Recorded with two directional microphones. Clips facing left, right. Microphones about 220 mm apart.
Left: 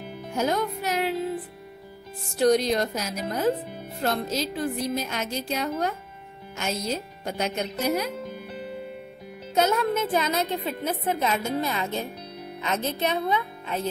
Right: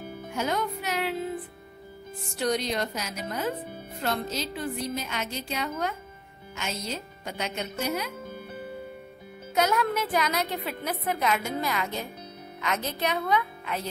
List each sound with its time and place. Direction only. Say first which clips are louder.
0.4 s music: left 4 dB; 40° left (ahead or behind)
2.3 s speech: left 7 dB; 40° left (ahead or behind)
9.5 s a woman's voice: left 2 dB; 25° left (ahead or behind)